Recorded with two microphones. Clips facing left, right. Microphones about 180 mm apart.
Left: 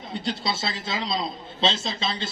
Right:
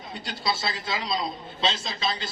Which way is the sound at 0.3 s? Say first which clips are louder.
Left 1 dB; 25° left (ahead or behind).